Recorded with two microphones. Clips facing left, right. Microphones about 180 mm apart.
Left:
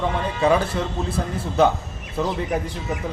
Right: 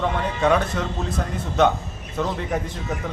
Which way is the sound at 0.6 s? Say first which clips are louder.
Left 1 dB; 30° left (ahead or behind).